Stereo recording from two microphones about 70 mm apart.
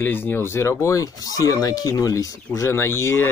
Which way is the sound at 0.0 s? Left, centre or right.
Left.